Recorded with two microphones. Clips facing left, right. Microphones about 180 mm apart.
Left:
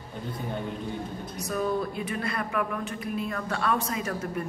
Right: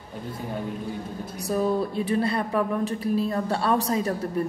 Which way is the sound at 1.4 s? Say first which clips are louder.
Right 4 dB; 30° right (ahead or behind).